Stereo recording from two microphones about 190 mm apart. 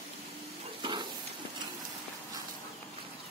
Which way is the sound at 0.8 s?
25° right (ahead or behind).